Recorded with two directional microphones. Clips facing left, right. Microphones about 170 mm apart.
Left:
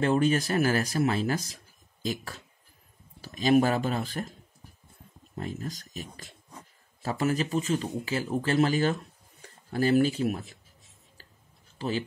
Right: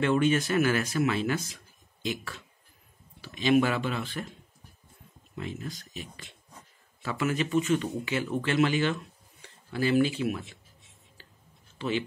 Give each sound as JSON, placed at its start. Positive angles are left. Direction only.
{"t": 0.0, "sound": "a man's voice", "side_deg": 35}
{"t": 11.8, "sound": "a man's voice", "side_deg": 35}